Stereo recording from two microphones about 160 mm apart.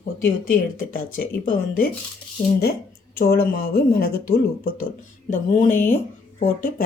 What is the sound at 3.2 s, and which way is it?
Speech, 70° left (ahead or behind).